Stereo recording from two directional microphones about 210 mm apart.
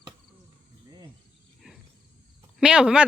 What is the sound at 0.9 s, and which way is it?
Insect, 15° right (ahead or behind).